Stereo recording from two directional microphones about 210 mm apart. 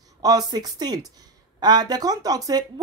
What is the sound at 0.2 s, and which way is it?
A woman's voice, 20° right (ahead or behind).